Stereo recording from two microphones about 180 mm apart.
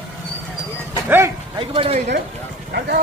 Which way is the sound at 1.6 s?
30° right (ahead or behind).